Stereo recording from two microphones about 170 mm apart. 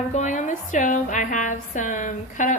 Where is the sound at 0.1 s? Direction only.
45° left (ahead or behind).